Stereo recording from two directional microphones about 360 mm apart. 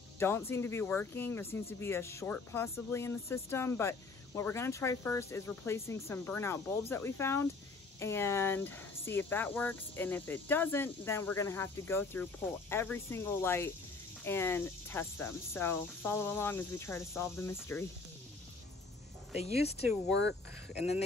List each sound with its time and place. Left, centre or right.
0.2 s speech: centre
20.1 s speech: left